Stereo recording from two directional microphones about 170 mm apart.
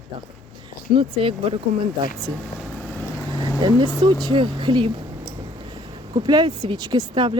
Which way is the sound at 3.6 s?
25° right (ahead or behind).